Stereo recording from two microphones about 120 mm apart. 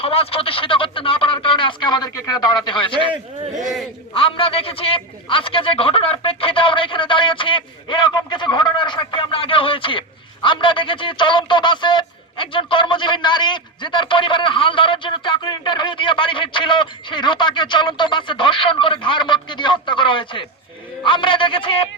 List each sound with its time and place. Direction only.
0.0 s speech: 55° left (ahead or behind)
4.1 s speech: 50° left (ahead or behind)